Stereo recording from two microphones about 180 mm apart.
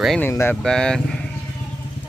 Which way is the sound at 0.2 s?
10° left (ahead or behind).